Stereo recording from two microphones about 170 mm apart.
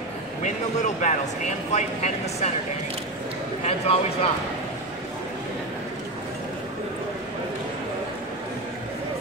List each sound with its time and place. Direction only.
0.4 s speech: 45° left (ahead or behind)
3.6 s speech: 35° left (ahead or behind)